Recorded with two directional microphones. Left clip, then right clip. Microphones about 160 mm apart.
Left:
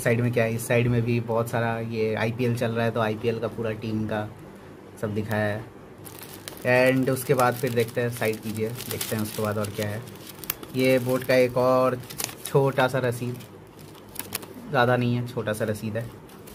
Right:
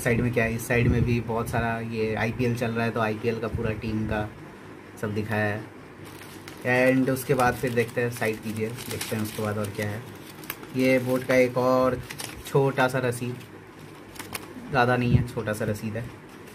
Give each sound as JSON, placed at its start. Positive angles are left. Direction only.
{"t": 0.0, "sound": "speech", "side_deg": 15}
{"t": 6.6, "sound": "speech", "side_deg": 15}
{"t": 14.7, "sound": "speech", "side_deg": 15}